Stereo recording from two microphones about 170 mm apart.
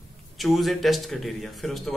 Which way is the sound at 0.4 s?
Centre (ahead or behind).